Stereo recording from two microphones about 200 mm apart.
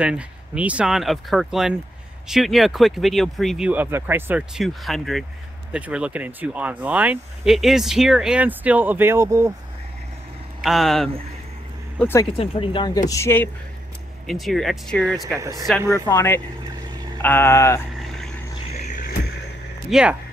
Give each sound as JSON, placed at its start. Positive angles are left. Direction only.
{"t": 0.0, "sound": "speech", "side_deg": -5}
{"t": 10.6, "sound": "speech", "side_deg": 0}
{"t": 12.0, "sound": "speech", "side_deg": 10}
{"t": 12.4, "sound": "speech", "side_deg": 25}
{"t": 13.1, "sound": "speech", "side_deg": 10}
{"t": 14.2, "sound": "speech", "side_deg": 0}
{"t": 15.3, "sound": "speech", "side_deg": -15}
{"t": 16.1, "sound": "speech", "side_deg": 10}
{"t": 17.9, "sound": "vehicle", "side_deg": 0}
{"t": 18.7, "sound": "music", "side_deg": 35}
{"t": 19.9, "sound": "speech", "side_deg": -5}